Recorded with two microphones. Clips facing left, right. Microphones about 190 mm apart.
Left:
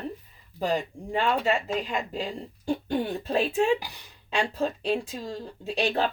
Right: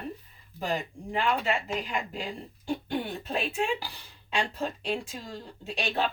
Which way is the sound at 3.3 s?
35° left (ahead or behind).